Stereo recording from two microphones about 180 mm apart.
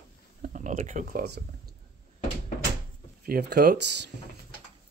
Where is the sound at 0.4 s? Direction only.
45° right (ahead or behind); by 1.4 s 60° right (ahead or behind).